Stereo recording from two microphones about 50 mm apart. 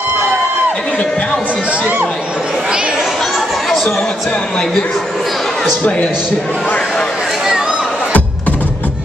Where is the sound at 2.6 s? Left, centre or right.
Centre.